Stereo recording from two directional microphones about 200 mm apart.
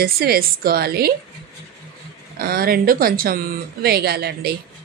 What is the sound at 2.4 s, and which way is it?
Speech, 45° right (ahead or behind).